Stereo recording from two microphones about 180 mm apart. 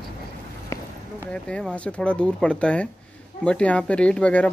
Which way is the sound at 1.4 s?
5° left (ahead or behind).